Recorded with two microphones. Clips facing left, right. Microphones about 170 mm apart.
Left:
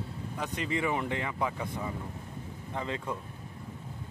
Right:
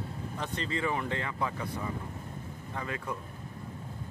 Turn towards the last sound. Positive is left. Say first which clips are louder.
# left 2 dB
turn(degrees=20)  # may be behind; listen again after turning